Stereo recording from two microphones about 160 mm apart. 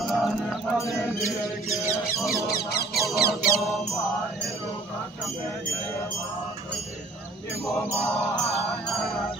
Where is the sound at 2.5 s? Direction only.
75° left (ahead or behind).